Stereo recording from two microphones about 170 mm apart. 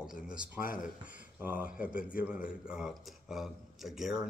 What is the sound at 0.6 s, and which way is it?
Speech, 55° left (ahead or behind).